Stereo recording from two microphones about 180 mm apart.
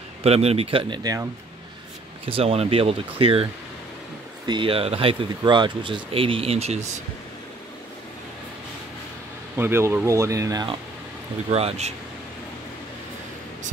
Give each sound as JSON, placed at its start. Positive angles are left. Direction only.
{"t": 0.2, "sound": "speech", "side_deg": -35}
{"t": 2.2, "sound": "speech", "side_deg": -30}
{"t": 4.5, "sound": "speech", "side_deg": -30}
{"t": 9.6, "sound": "speech", "side_deg": -15}
{"t": 11.5, "sound": "speech", "side_deg": -35}